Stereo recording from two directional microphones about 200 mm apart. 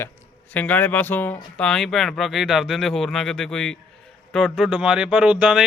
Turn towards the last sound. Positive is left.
turn(degrees=-5)  # may be behind; listen again after turning